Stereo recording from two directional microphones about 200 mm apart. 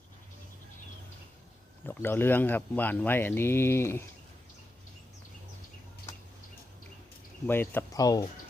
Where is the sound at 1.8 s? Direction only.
10° left (ahead or behind).